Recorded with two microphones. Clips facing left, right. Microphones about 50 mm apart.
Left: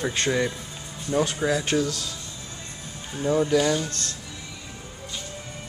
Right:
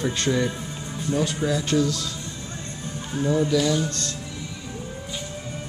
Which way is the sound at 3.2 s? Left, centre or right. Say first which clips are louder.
Left 1 dB; left.